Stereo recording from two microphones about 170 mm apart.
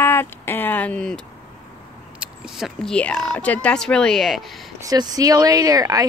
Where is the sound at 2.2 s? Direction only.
Centre (ahead or behind).